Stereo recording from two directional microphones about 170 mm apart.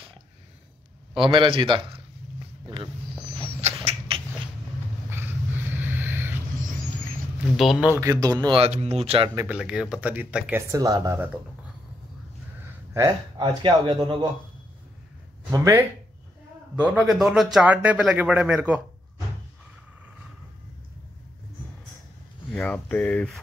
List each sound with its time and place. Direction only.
1.1 s speech: 30° right (ahead or behind)
2.6 s a sound: 30° right (ahead or behind)
3.6 s rodents: 35° right (ahead or behind)
5.7 s a sound: 10° right (ahead or behind)
7.5 s speech: centre (ahead or behind)
8.0 s speech: 20° right (ahead or behind)
9.5 s a man's voice: 5° right (ahead or behind)
10.7 s speech: 20° right (ahead or behind)
12.9 s speech: 20° right (ahead or behind)
15.5 s speech: 20° right (ahead or behind)
16.7 s a man's voice: 5° right (ahead or behind)
22.5 s speech: 5° left (ahead or behind)